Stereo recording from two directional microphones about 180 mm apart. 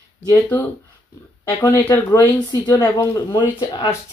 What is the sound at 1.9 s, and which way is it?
Speech, 20° left (ahead or behind).